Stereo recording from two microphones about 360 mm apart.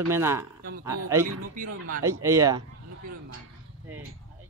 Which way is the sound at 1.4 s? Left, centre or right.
Right.